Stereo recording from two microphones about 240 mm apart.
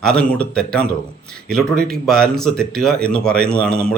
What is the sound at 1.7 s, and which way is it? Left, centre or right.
Speech, right.